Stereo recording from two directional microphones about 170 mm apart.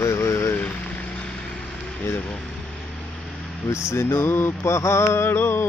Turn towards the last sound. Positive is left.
turn(degrees=15)  # may be behind; listen again after turning